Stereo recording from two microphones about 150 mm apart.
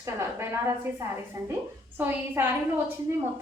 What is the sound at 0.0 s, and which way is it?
A woman's voice, 15° right (ahead or behind).